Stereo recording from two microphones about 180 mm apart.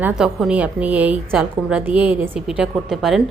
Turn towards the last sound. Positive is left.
turn(degrees=0)  # may be behind; listen again after turning